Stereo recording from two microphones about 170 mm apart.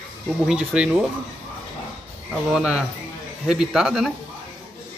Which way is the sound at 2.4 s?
5° right (ahead or behind).